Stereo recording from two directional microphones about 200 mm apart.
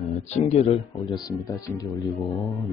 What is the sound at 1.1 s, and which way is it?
Speech, 20° left (ahead or behind).